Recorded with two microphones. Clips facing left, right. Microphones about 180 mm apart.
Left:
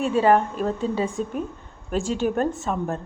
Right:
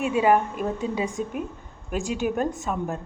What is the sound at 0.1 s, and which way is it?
A woman's voice, 10° right (ahead or behind).